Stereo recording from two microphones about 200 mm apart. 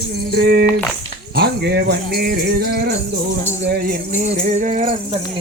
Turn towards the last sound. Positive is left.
turn(degrees=-40)  # may be behind; listen again after turning